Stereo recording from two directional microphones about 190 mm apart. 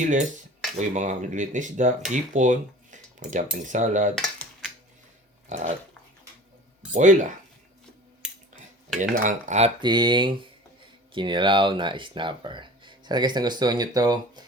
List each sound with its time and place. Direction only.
0.0 s speech: 40° right (ahead or behind)
4.1 s cutlery: 5° left (ahead or behind)
5.5 s dog: 40° right (ahead or behind)
6.9 s speech: 40° right (ahead or behind)
9.0 s speech: 40° right (ahead or behind)
9.8 s speech: 25° right (ahead or behind)